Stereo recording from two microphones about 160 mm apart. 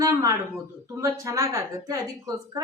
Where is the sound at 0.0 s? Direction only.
20° right (ahead or behind).